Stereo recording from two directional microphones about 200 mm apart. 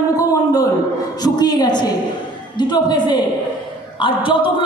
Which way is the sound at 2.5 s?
20° left (ahead or behind).